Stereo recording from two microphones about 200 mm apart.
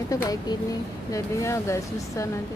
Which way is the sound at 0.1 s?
20° left (ahead or behind).